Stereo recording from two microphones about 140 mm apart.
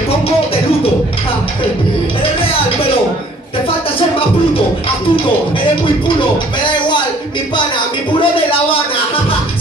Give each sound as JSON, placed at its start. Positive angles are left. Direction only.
{"t": 8.1, "sound": "speech", "side_deg": 40}